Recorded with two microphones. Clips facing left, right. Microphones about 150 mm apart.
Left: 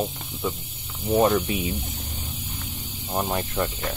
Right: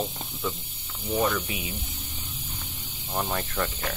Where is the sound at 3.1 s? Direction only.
15° left (ahead or behind).